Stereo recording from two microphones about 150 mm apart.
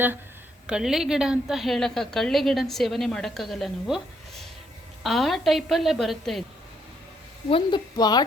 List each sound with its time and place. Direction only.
0.7 s a woman's voice: 5° right (ahead or behind)
7.5 s a woman's voice: 30° left (ahead or behind)